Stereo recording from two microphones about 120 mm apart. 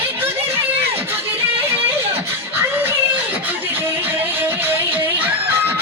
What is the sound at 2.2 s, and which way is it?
Music, 20° right (ahead or behind).